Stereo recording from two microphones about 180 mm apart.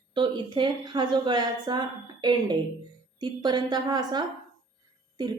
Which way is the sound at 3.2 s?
25° right (ahead or behind).